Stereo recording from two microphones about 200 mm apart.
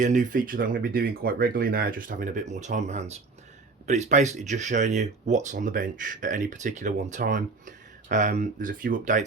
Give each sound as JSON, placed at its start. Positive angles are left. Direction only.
{"t": 0.0, "sound": "speech", "side_deg": -40}